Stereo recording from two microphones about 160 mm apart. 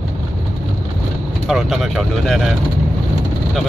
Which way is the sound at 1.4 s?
Centre (ahead or behind).